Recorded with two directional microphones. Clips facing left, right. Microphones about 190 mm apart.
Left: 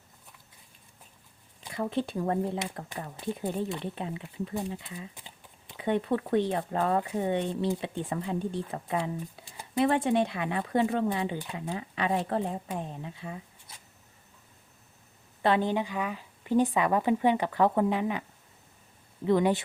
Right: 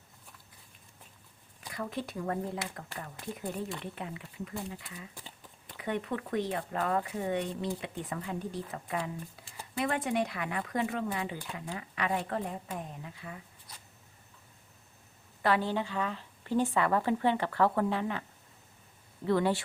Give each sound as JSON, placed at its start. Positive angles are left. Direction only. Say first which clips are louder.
{"t": 1.6, "sound": "speech", "louder": "left 6 dB", "side_deg": 25}
{"t": 15.4, "sound": "speech", "louder": "left 3 dB", "side_deg": 20}